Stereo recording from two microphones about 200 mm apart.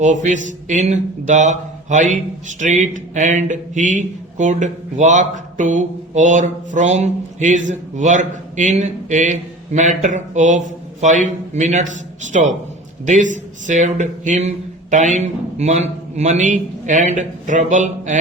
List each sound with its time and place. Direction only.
0.0 s a man's voice: 35° right (ahead or behind)